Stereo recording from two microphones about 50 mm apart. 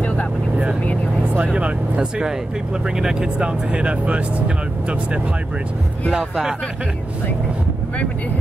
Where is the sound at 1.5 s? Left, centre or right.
Right.